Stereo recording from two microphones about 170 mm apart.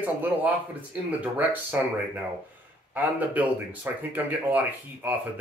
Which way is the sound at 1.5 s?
10° right (ahead or behind).